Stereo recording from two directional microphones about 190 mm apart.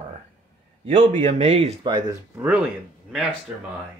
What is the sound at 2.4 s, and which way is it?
Speech, 5° right (ahead or behind).